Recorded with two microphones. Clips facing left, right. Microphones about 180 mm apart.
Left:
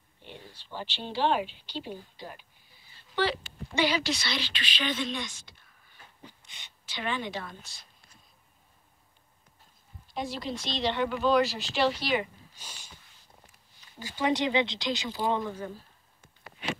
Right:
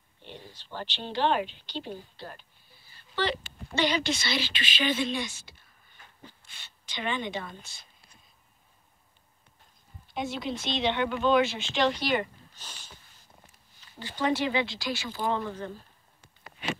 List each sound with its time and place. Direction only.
0.7 s a woman's voice: 10° left (ahead or behind); by 5.6 s 5° right (ahead or behind)
6.2 s a sound: 15° left (ahead or behind)
6.9 s a woman's voice: 5° left (ahead or behind)
10.1 s a woman's voice: centre (ahead or behind)
13.9 s speech: 10° left (ahead or behind)